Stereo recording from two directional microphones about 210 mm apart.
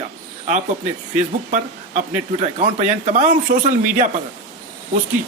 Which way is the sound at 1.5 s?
35° right (ahead or behind).